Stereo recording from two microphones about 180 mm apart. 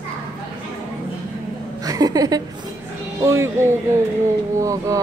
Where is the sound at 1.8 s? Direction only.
20° right (ahead or behind).